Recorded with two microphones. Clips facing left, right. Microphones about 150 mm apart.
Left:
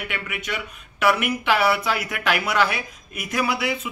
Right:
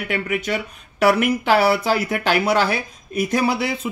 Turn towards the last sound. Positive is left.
turn(degrees=-35)  # may be behind; listen again after turning